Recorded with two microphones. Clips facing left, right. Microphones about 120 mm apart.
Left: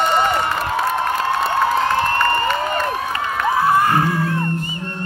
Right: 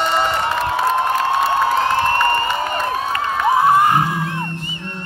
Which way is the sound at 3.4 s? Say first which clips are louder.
Right 2 dB; 20° right (ahead or behind).